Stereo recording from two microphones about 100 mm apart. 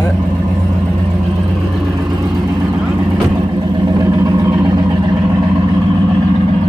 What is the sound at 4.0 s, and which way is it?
Vehicle, 40° right (ahead or behind).